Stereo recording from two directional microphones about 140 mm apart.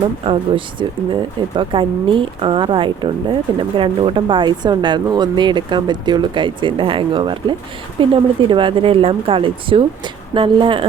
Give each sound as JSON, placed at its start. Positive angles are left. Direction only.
{"t": 0.3, "sound": "speech", "side_deg": -35}